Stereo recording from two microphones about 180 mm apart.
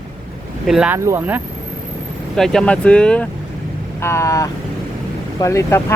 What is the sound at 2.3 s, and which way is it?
Speech, 5° left (ahead or behind).